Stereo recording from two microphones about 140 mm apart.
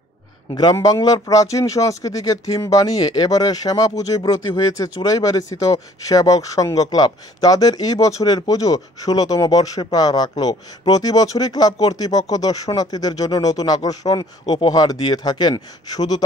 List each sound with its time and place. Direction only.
0.5 s a man's voice: 30° left (ahead or behind)